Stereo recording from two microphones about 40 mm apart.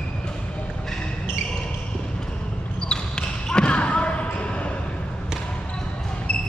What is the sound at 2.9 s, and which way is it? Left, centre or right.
Basketball bounce, left.